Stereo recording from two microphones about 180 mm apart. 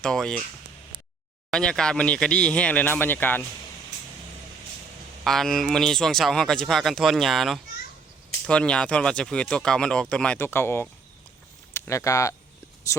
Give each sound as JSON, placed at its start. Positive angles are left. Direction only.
{"t": 0.0, "sound": "speech", "side_deg": 5}
{"t": 1.5, "sound": "speech", "side_deg": 5}
{"t": 5.2, "sound": "speech", "side_deg": 0}